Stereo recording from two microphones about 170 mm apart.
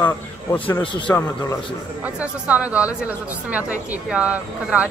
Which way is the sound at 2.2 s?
10° right (ahead or behind).